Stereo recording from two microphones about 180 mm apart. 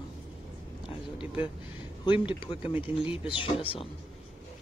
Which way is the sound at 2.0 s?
25° left (ahead or behind).